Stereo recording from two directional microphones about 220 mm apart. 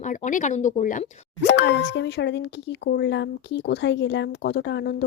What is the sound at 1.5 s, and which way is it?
Speech, 55° left (ahead or behind).